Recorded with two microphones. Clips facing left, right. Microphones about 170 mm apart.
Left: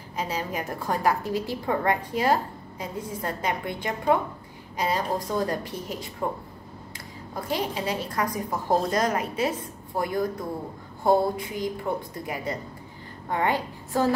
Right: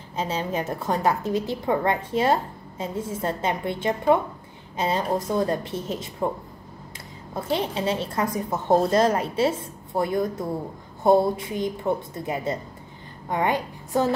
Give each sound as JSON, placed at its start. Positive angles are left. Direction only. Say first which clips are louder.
{"t": 0.1, "sound": "a woman's voice", "louder": "right 3 dB", "side_deg": -25}
{"t": 7.3, "sound": "a woman's voice", "louder": "right 3 dB", "side_deg": -25}